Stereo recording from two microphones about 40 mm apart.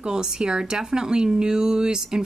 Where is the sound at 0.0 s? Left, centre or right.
Centre.